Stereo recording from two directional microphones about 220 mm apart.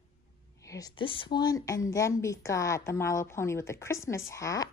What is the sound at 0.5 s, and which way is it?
A woman's voice, 15° left (ahead or behind).